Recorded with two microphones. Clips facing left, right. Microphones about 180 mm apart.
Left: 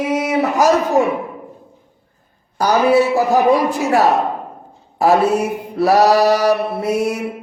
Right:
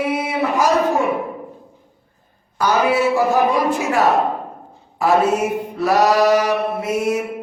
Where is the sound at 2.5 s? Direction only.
40° left (ahead or behind).